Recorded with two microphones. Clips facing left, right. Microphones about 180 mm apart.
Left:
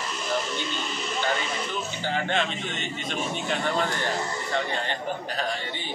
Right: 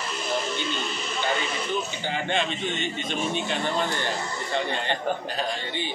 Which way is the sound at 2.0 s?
15° right (ahead or behind).